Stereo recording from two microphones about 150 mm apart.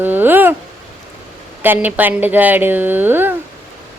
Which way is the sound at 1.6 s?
10° right (ahead or behind).